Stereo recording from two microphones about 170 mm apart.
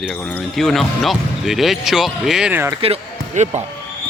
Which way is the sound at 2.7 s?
35° right (ahead or behind).